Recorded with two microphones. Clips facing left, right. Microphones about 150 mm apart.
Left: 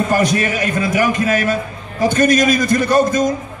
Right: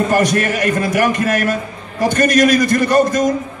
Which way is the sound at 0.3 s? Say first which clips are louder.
Right 2 dB; 50° right (ahead or behind).